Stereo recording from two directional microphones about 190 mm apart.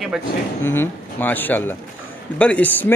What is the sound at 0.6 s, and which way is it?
Speech, 10° left (ahead or behind).